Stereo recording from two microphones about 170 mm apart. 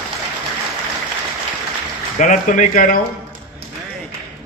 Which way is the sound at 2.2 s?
50° left (ahead or behind).